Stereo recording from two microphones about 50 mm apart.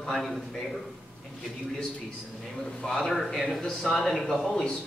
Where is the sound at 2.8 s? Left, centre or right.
Centre.